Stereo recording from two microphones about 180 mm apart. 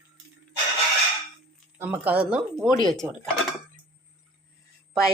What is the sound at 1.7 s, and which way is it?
Speech, 10° right (ahead or behind).